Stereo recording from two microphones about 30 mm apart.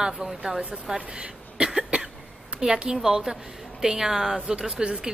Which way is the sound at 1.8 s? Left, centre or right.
Right.